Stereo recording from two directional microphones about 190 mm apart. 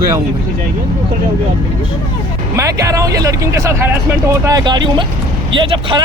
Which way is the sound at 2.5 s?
15° right (ahead or behind).